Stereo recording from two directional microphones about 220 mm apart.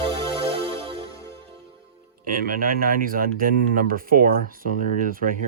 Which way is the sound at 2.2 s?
40° right (ahead or behind).